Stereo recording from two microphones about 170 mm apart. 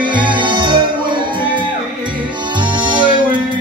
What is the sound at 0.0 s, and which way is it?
Music, 30° right (ahead or behind).